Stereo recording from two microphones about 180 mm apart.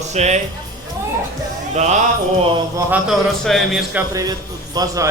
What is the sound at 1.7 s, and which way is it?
Speech, 40° right (ahead or behind).